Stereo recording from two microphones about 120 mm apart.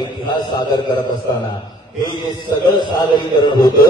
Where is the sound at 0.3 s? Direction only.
35° left (ahead or behind).